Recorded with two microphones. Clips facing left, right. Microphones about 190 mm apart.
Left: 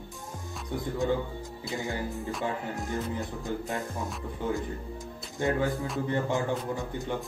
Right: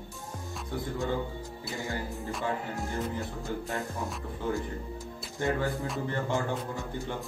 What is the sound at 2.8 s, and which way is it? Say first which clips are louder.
Music: left 1 dB; 20° left (ahead or behind).